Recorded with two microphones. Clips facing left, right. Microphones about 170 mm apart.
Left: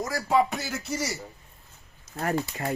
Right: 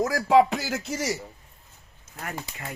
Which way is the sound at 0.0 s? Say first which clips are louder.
Right 5 dB; 90° right.